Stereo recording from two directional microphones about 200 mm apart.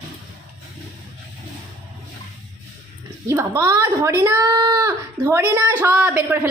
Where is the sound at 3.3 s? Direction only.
15° right (ahead or behind).